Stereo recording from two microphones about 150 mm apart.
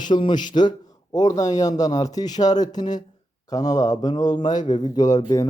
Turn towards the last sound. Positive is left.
turn(degrees=25)  # may be behind; listen again after turning